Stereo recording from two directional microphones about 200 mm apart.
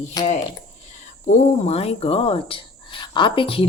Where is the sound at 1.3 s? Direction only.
30° left (ahead or behind).